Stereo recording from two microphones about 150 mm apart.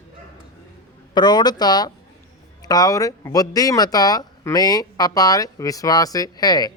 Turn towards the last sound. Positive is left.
turn(degrees=25)  # may be behind; listen again after turning